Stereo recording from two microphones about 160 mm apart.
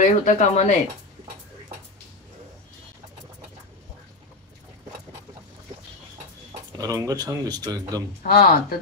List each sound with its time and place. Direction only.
0.0 s speech: 50° left (ahead or behind)
6.8 s speech: 20° right (ahead or behind)
8.2 s speech: 70° left (ahead or behind)